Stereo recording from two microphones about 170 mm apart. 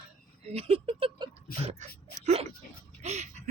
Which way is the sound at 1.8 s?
40° right (ahead or behind).